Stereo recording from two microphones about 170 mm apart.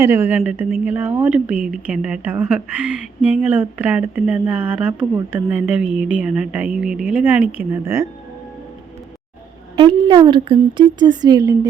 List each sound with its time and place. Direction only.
0.0 s a woman's voice: 15° right (ahead or behind)
9.7 s a woman's voice: 30° right (ahead or behind)